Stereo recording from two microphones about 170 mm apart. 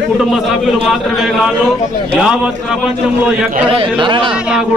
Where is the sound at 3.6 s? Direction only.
30° right (ahead or behind).